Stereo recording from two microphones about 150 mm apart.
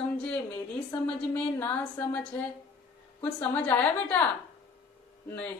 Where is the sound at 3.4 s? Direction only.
10° left (ahead or behind).